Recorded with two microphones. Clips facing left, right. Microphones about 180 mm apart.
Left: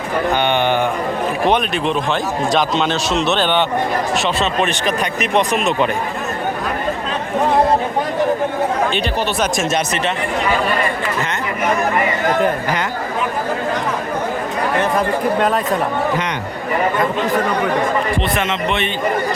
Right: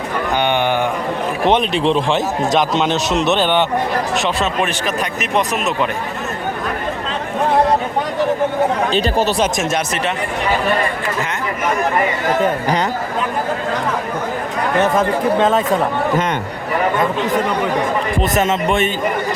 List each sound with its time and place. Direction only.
0.4 s a sound: 15° right (ahead or behind)
1.5 s a man's voice: 25° right (ahead or behind); by 5.9 s centre (ahead or behind)
8.9 s speech: 40° right (ahead or behind)
9.6 s speech: 10° right (ahead or behind)
18.2 s a man's voice: 45° right (ahead or behind)